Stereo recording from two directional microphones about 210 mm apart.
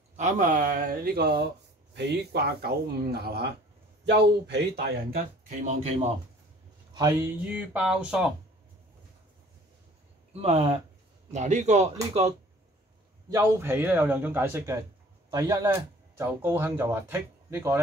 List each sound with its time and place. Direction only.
0.1 s speech: 35° right (ahead or behind); by 4.9 s 50° right (ahead or behind)
5.6 s speech: 30° right (ahead or behind)
6.9 s a man's voice: 15° right (ahead or behind)
10.4 s speech: 30° right (ahead or behind)
13.3 s a man's voice: 10° right (ahead or behind)